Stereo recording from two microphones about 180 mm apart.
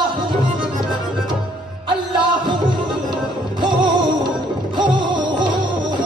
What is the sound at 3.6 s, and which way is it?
Music, 25° right (ahead or behind).